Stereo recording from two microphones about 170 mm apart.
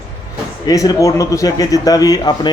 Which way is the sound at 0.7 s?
20° left (ahead or behind).